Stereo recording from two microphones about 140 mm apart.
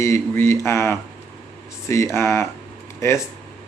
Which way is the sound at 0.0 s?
20° left (ahead or behind).